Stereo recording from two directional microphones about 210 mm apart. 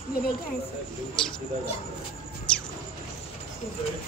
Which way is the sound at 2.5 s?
5° left (ahead or behind).